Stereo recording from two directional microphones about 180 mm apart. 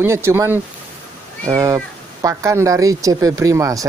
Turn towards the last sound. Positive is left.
turn(degrees=-20)  # may be behind; listen again after turning